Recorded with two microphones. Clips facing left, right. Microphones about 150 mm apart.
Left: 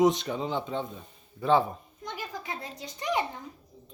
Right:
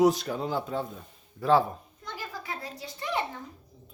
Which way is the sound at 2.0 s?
20° left (ahead or behind).